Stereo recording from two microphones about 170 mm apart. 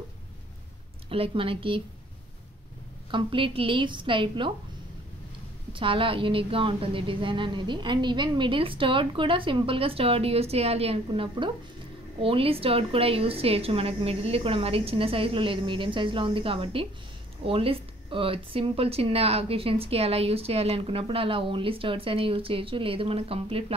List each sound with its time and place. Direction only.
1.0 s speech: 35° right (ahead or behind)
3.1 s a woman's voice: 30° right (ahead or behind)
5.7 s speech: 30° right (ahead or behind)